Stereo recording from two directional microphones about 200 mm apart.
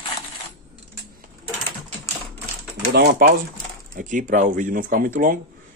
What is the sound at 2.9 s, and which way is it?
Speech, 55° right (ahead or behind).